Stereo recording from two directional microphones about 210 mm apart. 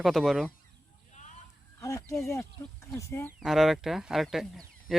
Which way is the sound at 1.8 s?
15° left (ahead or behind).